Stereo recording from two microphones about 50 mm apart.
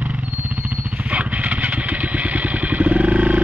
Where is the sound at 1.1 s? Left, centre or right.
Right.